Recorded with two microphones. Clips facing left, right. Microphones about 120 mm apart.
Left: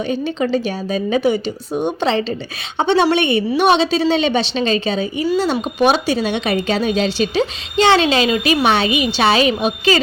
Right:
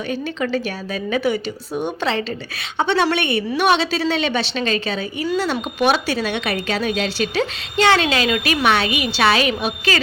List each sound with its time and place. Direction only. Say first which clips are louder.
0.1 s speech: left 3 dB; 25° left (ahead or behind)